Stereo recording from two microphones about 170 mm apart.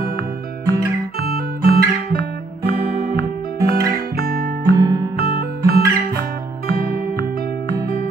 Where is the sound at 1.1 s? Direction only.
60° right (ahead or behind).